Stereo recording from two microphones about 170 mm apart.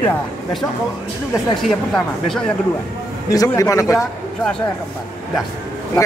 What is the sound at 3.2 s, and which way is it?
Speech, 20° left (ahead or behind).